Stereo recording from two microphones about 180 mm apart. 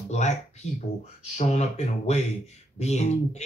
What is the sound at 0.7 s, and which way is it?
Speech, 40° left (ahead or behind).